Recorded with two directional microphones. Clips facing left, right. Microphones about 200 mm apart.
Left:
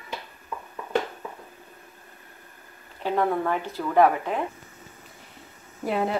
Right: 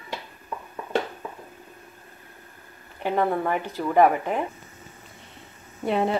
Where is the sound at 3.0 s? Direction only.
15° right (ahead or behind).